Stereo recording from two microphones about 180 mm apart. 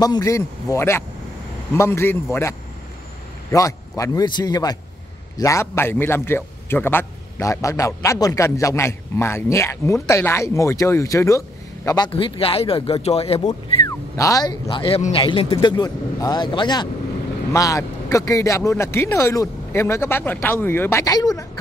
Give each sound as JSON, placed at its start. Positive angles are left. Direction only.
{"t": 0.0, "sound": "a man's voice", "side_deg": 20}
{"t": 3.5, "sound": "a man's voice", "side_deg": 20}
{"t": 13.5, "sound": "a man's voice", "side_deg": 20}